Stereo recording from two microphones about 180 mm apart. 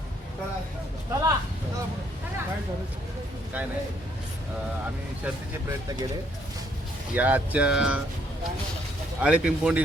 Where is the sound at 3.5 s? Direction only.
5° right (ahead or behind).